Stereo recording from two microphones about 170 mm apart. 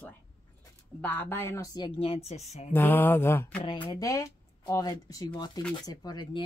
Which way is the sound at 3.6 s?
30° left (ahead or behind).